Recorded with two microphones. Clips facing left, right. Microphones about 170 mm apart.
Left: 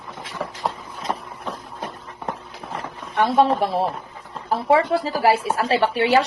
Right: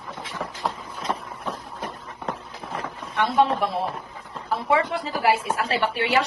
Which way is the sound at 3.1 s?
35° left (ahead or behind).